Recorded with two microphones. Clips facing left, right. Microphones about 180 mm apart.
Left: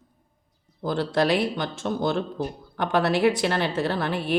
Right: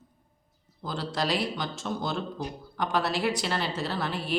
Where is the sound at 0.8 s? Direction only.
55° left (ahead or behind).